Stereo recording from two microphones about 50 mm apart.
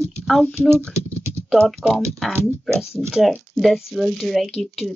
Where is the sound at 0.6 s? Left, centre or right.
Right.